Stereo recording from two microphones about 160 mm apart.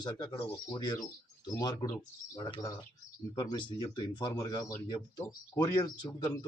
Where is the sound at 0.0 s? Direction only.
25° left (ahead or behind).